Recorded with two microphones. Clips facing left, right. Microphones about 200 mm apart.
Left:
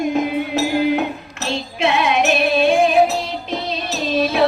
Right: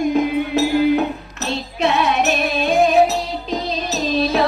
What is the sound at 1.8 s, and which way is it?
Music, 40° right (ahead or behind).